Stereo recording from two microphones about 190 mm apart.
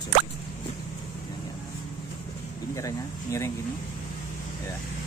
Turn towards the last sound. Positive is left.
turn(degrees=15)  # may be behind; listen again after turning